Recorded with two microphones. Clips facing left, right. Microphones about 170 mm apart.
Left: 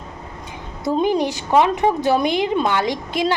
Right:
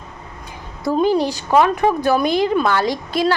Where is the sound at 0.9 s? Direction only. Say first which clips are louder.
Right 2 dB; 20° left (ahead or behind).